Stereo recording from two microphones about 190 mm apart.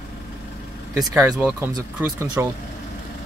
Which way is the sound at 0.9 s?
15° right (ahead or behind).